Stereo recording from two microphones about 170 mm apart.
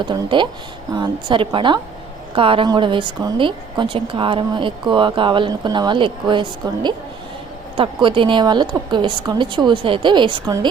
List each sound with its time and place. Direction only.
0.0 s a woman's voice: 30° right (ahead or behind)